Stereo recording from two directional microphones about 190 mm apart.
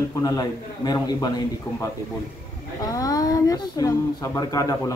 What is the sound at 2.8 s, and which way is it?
Speech, 20° left (ahead or behind).